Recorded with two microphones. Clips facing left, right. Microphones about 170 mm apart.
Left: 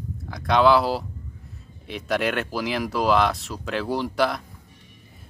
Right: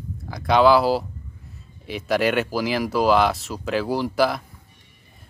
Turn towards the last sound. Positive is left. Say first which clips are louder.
# right 2 dB
turn(degrees=0)  # may be behind; listen again after turning